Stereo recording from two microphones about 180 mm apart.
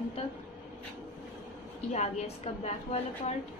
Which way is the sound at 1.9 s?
40° left (ahead or behind).